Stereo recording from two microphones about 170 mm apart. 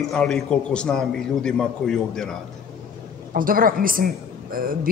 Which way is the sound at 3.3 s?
55° right (ahead or behind).